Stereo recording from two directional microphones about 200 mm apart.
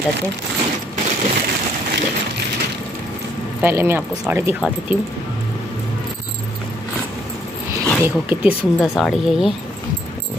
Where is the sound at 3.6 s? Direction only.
10° right (ahead or behind).